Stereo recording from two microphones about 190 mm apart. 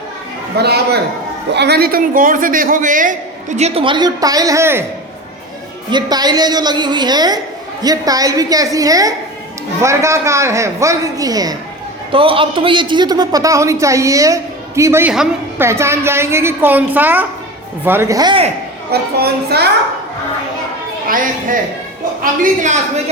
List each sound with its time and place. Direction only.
0.5 s a child's voice: 60° right (ahead or behind); by 4.9 s 15° right (ahead or behind)
5.9 s a woman's voice: 20° right (ahead or behind)
15.1 s a woman's voice: 5° right (ahead or behind)
15.6 s a man's voice: 15° right (ahead or behind)
18.9 s a child's voice: 55° right (ahead or behind)
21.1 s a man's voice: 45° right (ahead or behind)